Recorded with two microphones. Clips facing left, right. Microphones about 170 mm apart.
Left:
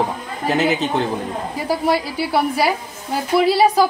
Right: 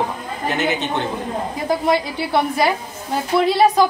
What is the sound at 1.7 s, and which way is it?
A woman's voice, 5° left (ahead or behind).